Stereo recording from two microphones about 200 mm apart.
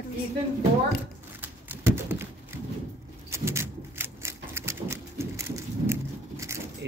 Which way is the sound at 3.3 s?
15° right (ahead or behind).